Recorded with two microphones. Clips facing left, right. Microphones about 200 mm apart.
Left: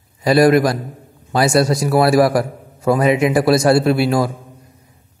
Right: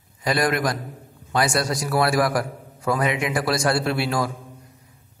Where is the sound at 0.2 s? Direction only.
25° left (ahead or behind).